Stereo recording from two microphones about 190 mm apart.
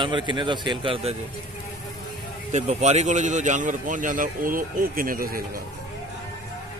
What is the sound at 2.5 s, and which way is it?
Speech, 35° right (ahead or behind).